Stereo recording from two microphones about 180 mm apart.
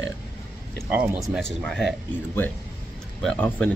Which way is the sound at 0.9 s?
10° right (ahead or behind).